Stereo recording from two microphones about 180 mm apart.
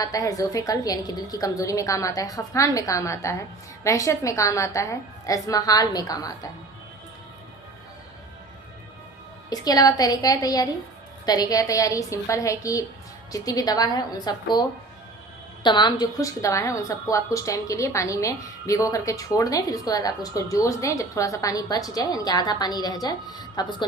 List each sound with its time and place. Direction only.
0.0 s a woman's voice: 20° left (ahead or behind)
9.5 s a woman's voice: 20° left (ahead or behind)
15.6 s a woman's voice: 25° left (ahead or behind)